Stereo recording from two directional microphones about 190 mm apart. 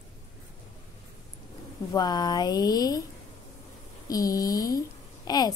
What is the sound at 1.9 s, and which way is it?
A woman's voice, 20° left (ahead or behind).